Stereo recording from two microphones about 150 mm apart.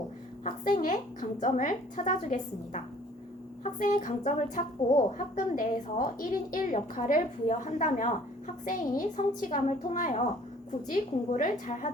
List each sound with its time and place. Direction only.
0.4 s a woman's voice: 65° left (ahead or behind)